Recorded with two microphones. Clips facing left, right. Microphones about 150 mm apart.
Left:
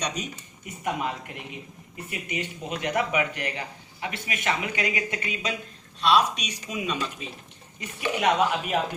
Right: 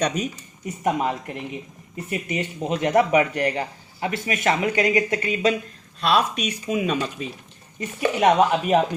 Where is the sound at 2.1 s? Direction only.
45° right (ahead or behind).